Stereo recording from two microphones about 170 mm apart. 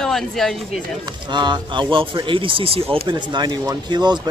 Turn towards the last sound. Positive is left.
turn(degrees=-25)  # may be behind; listen again after turning